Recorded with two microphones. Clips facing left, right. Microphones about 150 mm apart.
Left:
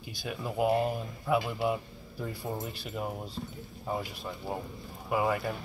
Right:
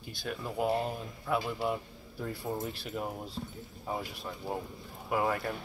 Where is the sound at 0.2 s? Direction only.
5° left (ahead or behind).